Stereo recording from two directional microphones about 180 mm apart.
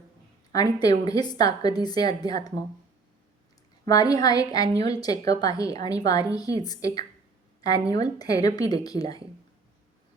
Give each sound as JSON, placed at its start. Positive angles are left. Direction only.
{"t": 0.5, "sound": "a woman's voice", "side_deg": 20}
{"t": 3.8, "sound": "a woman's voice", "side_deg": 20}